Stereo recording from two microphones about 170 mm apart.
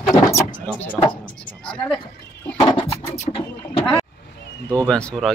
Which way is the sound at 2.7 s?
30° left (ahead or behind).